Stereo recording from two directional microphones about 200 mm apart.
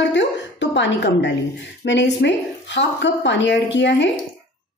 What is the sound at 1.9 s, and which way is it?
Speech, 60° left (ahead or behind).